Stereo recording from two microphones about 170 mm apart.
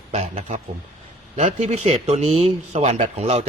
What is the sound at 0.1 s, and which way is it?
Speech, 40° right (ahead or behind).